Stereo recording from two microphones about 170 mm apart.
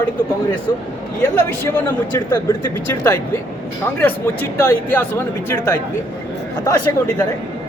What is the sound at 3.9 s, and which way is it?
Speech, 10° left (ahead or behind).